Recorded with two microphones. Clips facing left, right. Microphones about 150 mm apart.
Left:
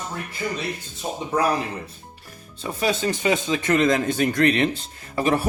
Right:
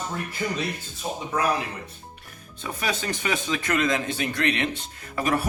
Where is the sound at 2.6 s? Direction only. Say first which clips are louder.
Left 6 dB; 30° left (ahead or behind).